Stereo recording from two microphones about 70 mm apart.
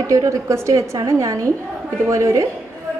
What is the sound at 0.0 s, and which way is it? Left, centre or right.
A woman's voice, right.